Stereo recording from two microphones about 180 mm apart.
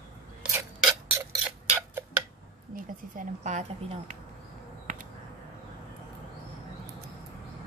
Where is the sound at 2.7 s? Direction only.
50° right (ahead or behind).